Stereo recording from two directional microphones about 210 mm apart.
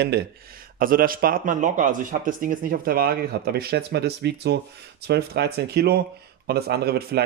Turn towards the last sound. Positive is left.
turn(degrees=-50)  # may be behind; listen again after turning